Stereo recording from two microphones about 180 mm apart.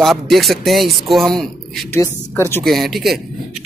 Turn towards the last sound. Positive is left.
turn(degrees=0)  # may be behind; listen again after turning